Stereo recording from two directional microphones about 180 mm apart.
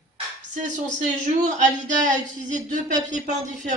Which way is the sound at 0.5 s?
45° right (ahead or behind).